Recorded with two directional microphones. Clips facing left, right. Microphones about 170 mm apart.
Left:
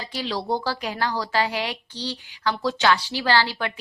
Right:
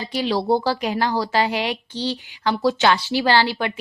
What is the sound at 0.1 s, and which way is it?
A woman's voice, 15° right (ahead or behind).